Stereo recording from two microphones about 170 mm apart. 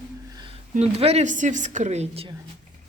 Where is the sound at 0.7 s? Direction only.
35° right (ahead or behind).